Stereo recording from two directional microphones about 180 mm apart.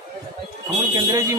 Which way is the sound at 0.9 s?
15° right (ahead or behind).